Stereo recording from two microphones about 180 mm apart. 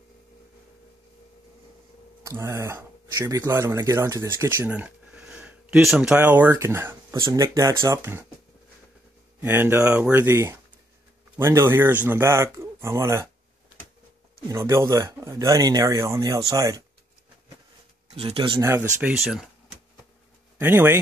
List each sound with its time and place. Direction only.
2.2 s speech: 15° right (ahead or behind)
9.4 s speech: 10° right (ahead or behind)
14.5 s speech: 15° right (ahead or behind)
18.1 s speech: 30° right (ahead or behind)
18.6 s speech: 15° right (ahead or behind)
20.5 s speech: 10° right (ahead or behind)